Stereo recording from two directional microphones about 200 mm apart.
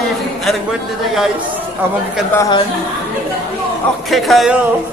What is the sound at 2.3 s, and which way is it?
Speech, 15° left (ahead or behind).